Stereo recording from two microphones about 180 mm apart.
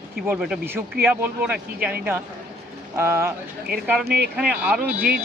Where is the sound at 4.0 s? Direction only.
55° right (ahead or behind).